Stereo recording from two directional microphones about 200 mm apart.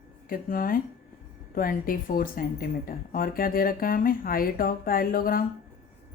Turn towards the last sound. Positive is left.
turn(degrees=45)  # may be behind; listen again after turning